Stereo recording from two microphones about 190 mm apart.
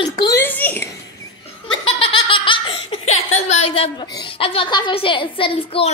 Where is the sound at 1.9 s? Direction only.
25° left (ahead or behind).